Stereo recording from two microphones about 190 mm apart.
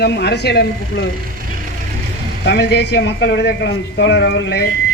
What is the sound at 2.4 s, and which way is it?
Speech, 60° left (ahead or behind).